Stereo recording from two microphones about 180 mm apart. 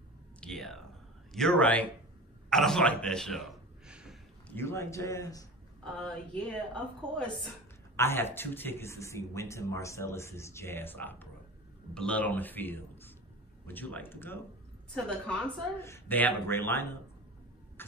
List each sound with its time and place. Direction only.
0.4 s a sound: centre (ahead or behind)
1.3 s speech: 5° left (ahead or behind)
2.5 s a sound: 5° left (ahead or behind)
4.5 s speech: 15° left (ahead or behind)
5.9 s speech: 5° left (ahead or behind)
17.8 s rodents: 10° left (ahead or behind)